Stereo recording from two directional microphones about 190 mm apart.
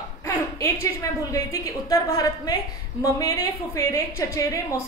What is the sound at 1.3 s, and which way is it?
A woman's voice, 15° left (ahead or behind).